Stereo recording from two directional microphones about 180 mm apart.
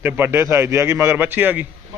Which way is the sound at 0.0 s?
10° right (ahead or behind).